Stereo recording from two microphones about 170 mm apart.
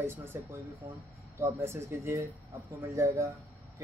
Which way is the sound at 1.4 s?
15° right (ahead or behind).